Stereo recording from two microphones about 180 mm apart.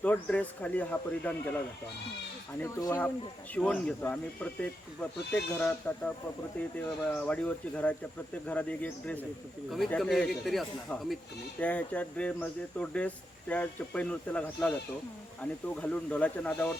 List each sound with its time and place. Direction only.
0.0 s speech: 10° left (ahead or behind)
2.6 s speech: 15° left (ahead or behind)
5.3 s speech: 5° left (ahead or behind)
7.1 s a man's voice: 10° left (ahead or behind)